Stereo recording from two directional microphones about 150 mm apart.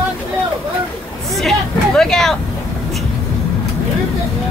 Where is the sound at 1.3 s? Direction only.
Centre (ahead or behind).